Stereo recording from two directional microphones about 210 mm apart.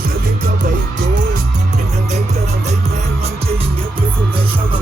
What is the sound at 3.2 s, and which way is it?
Music, 30° right (ahead or behind).